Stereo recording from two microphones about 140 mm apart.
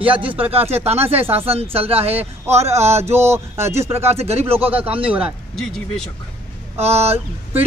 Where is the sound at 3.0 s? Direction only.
20° right (ahead or behind).